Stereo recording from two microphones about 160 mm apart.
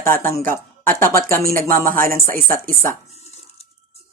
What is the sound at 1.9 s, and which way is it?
Speech, 65° right (ahead or behind).